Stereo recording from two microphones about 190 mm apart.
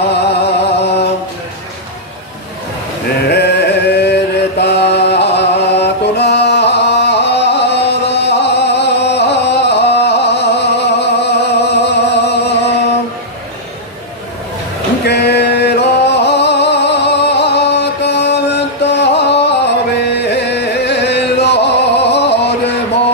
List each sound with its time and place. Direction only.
0.1 s a sound: 65° left (ahead or behind)
3.3 s chant: 60° left (ahead or behind)
15.0 s music: 60° left (ahead or behind)